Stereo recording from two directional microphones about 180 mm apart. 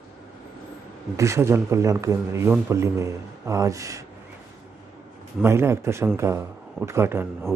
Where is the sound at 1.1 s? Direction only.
15° right (ahead or behind).